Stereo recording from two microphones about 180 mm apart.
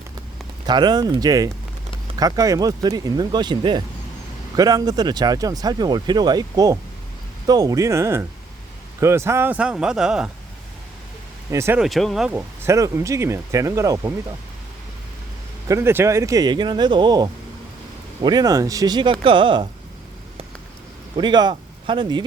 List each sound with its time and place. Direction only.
0.7 s speech: 25° right (ahead or behind); by 10.2 s 5° right (ahead or behind)
11.5 s speech: 15° right (ahead or behind)
11.8 s speech: centre (ahead or behind); by 14.1 s 20° right (ahead or behind)
15.6 s speech: 15° right (ahead or behind)
21.2 s speech: 25° right (ahead or behind)